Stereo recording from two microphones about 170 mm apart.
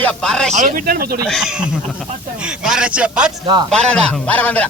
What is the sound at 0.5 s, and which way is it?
Speech, 55° right (ahead or behind).